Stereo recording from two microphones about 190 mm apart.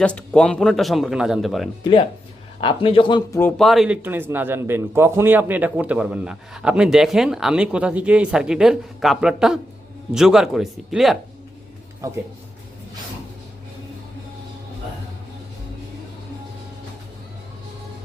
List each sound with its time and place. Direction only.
0.0 s a man's voice: 5° left (ahead or behind)
1.8 s speech: 25° left (ahead or behind)
3.4 s a man's voice: centre (ahead or behind)